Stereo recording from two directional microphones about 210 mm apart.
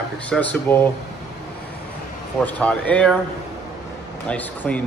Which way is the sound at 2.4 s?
5° left (ahead or behind).